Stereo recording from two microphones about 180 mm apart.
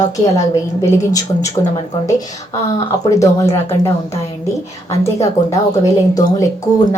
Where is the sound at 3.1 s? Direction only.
15° left (ahead or behind).